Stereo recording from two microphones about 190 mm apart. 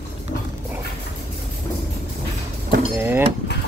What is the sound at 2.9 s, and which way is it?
Speech, 10° right (ahead or behind).